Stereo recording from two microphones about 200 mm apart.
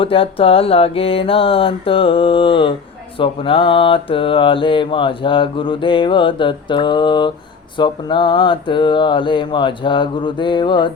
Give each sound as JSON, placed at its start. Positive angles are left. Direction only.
{"t": 0.0, "sound": "mantra", "side_deg": 25}